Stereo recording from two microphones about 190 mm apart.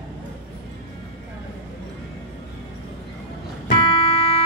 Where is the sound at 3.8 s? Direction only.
30° left (ahead or behind).